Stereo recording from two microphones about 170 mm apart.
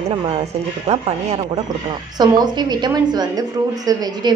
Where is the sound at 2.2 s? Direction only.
25° right (ahead or behind).